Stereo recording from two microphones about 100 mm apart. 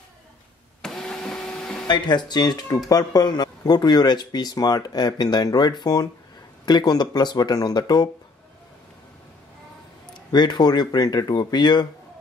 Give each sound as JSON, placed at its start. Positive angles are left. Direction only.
{"t": 0.8, "sound": "printer", "side_deg": 5}
{"t": 1.9, "sound": "speech", "side_deg": 45}
{"t": 10.3, "sound": "speech", "side_deg": 45}